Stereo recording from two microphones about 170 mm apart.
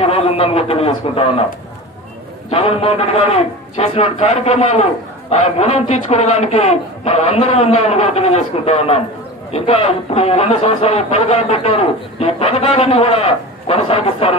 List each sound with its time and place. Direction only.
0.0 s a man's voice: 35° left (ahead or behind)
2.5 s speech: 35° left (ahead or behind)